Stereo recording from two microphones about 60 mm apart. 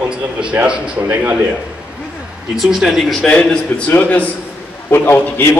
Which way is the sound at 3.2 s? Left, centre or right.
Centre.